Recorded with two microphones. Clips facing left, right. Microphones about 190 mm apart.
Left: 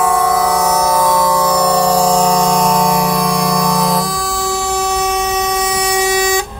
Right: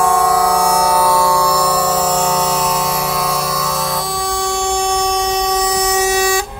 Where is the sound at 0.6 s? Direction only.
10° right (ahead or behind).